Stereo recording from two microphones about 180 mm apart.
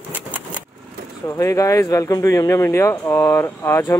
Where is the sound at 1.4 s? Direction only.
15° left (ahead or behind).